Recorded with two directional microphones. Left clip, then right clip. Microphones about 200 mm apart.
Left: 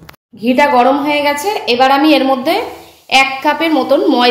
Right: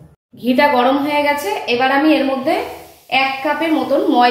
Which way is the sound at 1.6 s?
50° left (ahead or behind).